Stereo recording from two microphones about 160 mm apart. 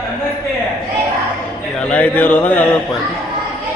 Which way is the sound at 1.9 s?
10° left (ahead or behind).